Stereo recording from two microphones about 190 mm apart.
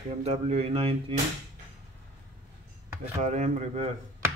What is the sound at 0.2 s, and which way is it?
Speech, 35° right (ahead or behind).